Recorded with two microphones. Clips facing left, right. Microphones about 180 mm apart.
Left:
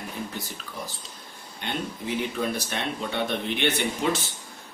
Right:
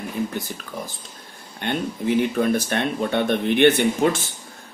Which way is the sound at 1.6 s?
55° right (ahead or behind).